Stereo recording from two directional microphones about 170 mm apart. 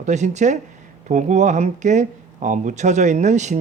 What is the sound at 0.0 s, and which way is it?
Speech, 45° right (ahead or behind).